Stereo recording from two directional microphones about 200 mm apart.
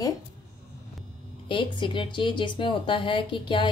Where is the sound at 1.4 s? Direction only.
25° left (ahead or behind).